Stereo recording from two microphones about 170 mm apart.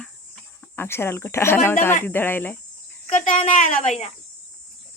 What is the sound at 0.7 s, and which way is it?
Speech, 15° left (ahead or behind).